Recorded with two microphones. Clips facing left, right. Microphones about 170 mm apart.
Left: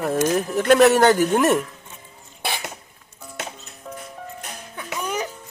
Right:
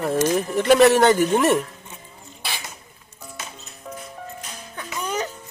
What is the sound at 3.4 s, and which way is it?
Music, 70° left (ahead or behind).